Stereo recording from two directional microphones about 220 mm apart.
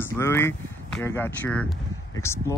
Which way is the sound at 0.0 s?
10° left (ahead or behind).